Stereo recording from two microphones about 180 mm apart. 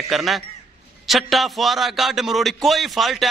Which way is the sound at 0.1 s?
Centre (ahead or behind).